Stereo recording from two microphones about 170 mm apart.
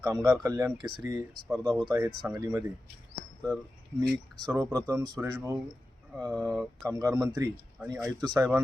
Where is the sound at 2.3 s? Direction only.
20° right (ahead or behind).